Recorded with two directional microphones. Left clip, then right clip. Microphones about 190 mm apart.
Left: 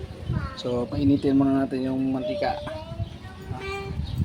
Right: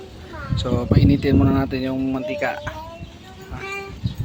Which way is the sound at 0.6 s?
20° right (ahead or behind).